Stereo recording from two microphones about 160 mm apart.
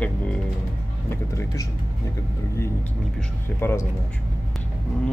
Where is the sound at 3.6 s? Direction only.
15° left (ahead or behind).